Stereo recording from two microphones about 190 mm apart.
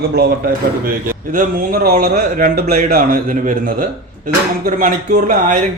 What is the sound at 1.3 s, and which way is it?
A man's voice, 50° right (ahead or behind).